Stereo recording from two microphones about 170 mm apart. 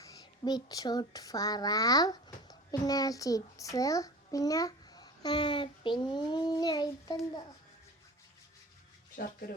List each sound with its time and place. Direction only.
0.0 s a child's voice: 20° left (ahead or behind)